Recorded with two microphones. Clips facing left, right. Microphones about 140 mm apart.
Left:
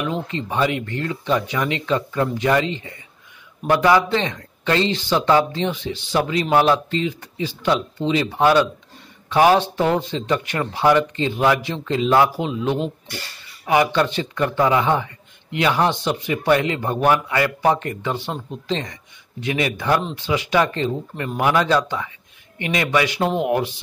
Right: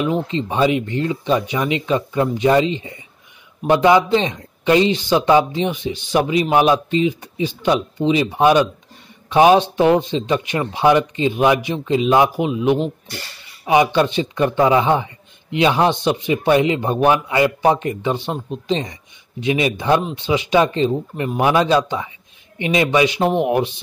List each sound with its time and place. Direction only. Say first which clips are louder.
0.0 s a man's voice: right 5 dB; 20° right (ahead or behind)